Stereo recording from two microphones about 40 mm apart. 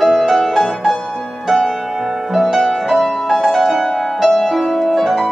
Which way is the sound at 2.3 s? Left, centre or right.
Centre.